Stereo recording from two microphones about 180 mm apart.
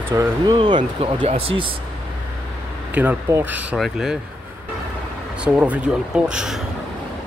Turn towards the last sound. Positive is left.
turn(degrees=-5)  # may be behind; listen again after turning